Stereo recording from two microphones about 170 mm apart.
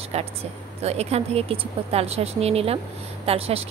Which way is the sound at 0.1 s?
35° right (ahead or behind).